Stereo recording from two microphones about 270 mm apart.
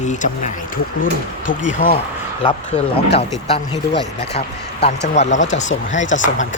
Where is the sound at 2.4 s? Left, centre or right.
Centre.